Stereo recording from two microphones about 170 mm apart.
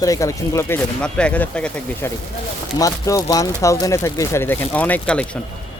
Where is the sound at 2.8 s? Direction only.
20° left (ahead or behind).